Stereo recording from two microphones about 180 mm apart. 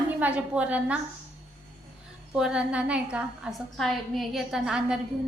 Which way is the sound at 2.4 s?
5° right (ahead or behind).